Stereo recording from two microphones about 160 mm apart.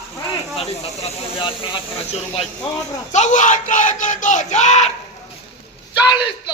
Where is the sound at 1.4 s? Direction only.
30° left (ahead or behind).